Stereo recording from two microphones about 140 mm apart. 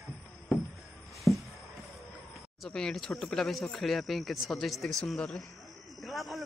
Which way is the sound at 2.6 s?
5° left (ahead or behind).